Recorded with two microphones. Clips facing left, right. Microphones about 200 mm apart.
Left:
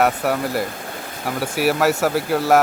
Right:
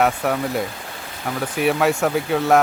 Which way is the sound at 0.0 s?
Centre (ahead or behind).